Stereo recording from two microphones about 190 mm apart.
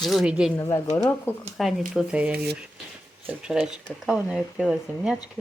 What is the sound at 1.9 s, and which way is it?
Speech, 5° right (ahead or behind).